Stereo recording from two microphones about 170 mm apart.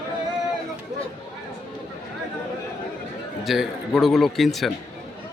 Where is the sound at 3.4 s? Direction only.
Centre (ahead or behind).